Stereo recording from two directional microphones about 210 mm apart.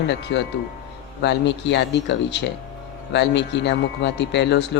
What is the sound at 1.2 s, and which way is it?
Speech, 55° left (ahead or behind).